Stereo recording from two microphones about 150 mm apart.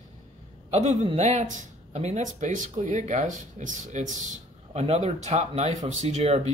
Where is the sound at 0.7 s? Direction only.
45° right (ahead or behind).